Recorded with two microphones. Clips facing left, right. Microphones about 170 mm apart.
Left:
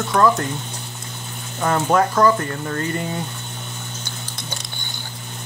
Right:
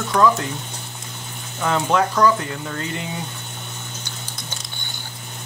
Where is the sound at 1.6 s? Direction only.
10° left (ahead or behind).